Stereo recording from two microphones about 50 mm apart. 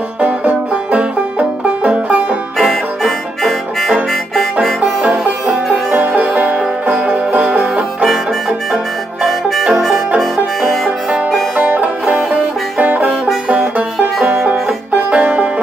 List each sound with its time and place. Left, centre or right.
1.8 s music: right
2.6 s music: centre
4.4 s banjo: centre
5.5 s music: centre
5.9 s music: right
8.0 s banjo: centre
9.8 s music: centre
11.5 s music: right
14.5 s banjo: right